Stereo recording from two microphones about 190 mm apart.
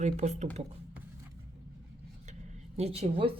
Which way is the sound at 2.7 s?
35° right (ahead or behind).